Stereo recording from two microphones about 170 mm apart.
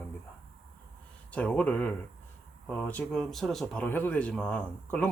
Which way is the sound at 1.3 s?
10° left (ahead or behind).